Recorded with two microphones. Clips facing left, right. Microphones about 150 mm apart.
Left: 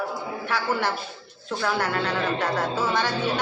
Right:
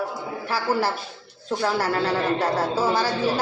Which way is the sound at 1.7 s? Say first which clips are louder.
Right 3 dB; 35° right (ahead or behind).